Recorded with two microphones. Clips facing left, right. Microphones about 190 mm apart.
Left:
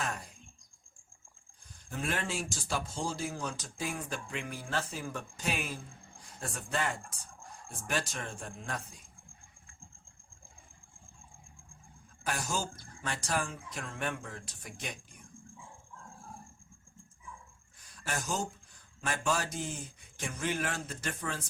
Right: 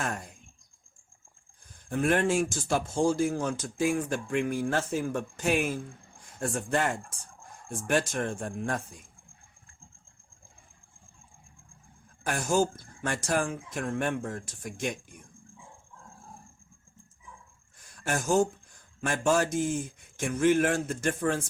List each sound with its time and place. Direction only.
1.9 s speech: 55° right (ahead or behind)
12.2 s speech: 50° right (ahead or behind)
18.0 s speech: 50° right (ahead or behind)